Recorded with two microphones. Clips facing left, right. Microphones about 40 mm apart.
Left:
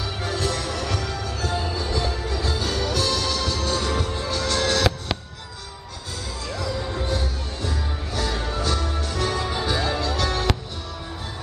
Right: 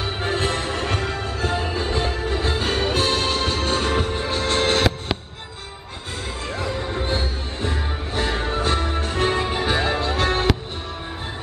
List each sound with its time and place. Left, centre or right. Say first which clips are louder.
0.0 s music: right 3 dB; right
6.5 s music: right 1 dB; right